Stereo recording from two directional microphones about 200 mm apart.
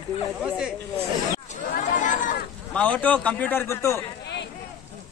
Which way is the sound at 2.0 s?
40° left (ahead or behind).